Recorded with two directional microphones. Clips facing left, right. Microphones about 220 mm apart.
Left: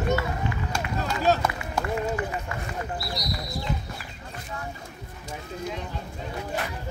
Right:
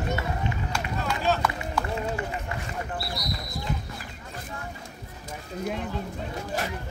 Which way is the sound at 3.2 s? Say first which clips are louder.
Left 1 dB; 55° right (ahead or behind).